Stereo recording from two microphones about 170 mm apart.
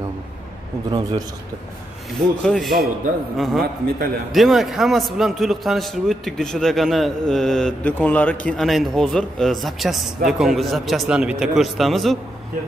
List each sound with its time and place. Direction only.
0.8 s a man's voice: 25° right (ahead or behind)
2.1 s a man's voice: centre (ahead or behind)